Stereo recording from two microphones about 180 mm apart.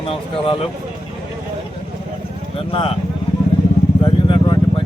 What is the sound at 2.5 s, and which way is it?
Speech, 30° left (ahead or behind).